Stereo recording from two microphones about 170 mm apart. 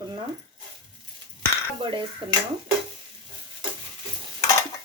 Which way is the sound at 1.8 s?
30° right (ahead or behind).